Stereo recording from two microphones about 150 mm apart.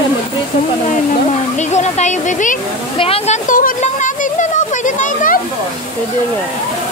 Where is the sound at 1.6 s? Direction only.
50° left (ahead or behind).